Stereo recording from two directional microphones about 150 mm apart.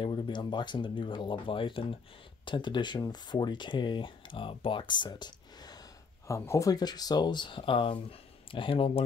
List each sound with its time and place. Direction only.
0.0 s speech: 35° left (ahead or behind)